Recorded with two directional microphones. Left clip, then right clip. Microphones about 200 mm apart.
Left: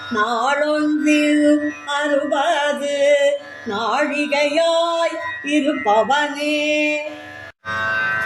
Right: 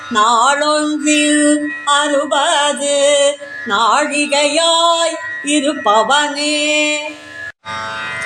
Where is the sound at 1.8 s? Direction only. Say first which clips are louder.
Right 9 dB; centre (ahead or behind).